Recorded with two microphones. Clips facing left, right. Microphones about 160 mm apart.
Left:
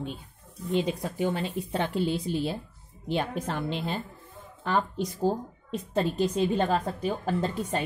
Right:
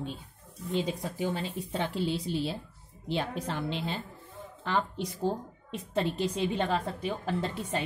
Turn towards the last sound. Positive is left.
turn(degrees=45)  # may be behind; listen again after turning